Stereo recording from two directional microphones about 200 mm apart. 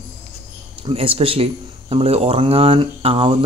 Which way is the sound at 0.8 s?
30° right (ahead or behind).